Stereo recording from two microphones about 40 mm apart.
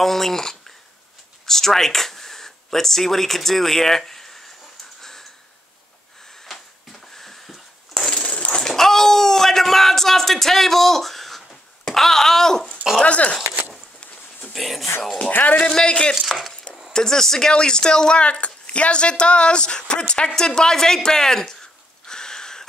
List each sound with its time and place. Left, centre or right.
0.0 s a woman's voice: centre
6.4 s a sound: centre
8.2 s a sound: left
13.0 s music: left
14.5 s speech: centre
15.1 s music: left
15.6 s speech: left
16.2 s chopping: centre
16.9 s a woman's voice: centre
22.0 s sniff: centre